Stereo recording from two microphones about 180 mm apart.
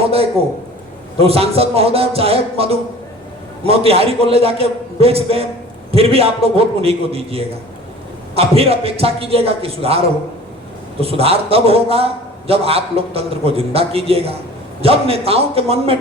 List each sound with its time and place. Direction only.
0.0 s a man's voice: 35° right (ahead or behind)
11.0 s a man's voice: 35° right (ahead or behind)